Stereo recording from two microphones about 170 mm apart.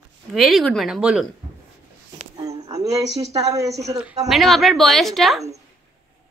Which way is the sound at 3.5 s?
20° right (ahead or behind).